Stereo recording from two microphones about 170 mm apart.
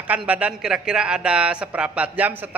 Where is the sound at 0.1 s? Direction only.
10° right (ahead or behind).